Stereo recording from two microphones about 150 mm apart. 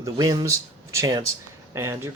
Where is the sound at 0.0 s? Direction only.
20° right (ahead or behind).